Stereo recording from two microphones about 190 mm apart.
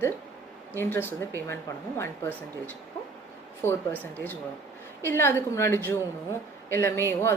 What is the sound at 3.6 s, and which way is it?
A woman's voice, 10° left (ahead or behind).